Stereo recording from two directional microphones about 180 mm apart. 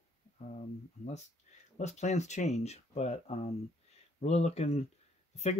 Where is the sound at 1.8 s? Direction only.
40° left (ahead or behind).